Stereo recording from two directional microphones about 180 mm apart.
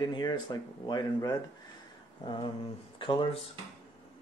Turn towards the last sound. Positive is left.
turn(degrees=30)  # may be behind; listen again after turning